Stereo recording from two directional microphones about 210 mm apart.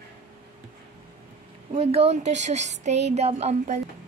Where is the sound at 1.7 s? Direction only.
30° right (ahead or behind).